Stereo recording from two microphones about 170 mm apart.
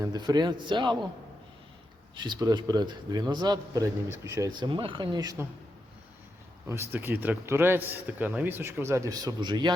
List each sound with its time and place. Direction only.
0.0 s a man's voice: 25° right (ahead or behind)
2.1 s a man's voice: 25° right (ahead or behind)
6.7 s a man's voice: 15° right (ahead or behind)